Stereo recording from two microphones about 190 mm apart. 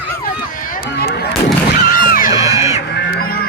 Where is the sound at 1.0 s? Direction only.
55° left (ahead or behind).